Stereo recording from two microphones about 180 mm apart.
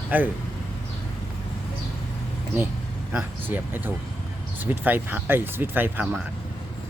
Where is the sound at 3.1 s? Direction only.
10° right (ahead or behind).